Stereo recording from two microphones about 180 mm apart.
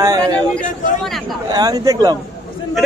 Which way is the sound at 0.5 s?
Centre (ahead or behind).